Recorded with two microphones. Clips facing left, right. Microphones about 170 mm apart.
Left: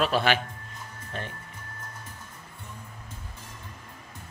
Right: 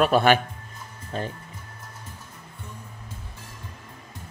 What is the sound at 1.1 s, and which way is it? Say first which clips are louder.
Speech: right 6 dB; 35° right (ahead or behind).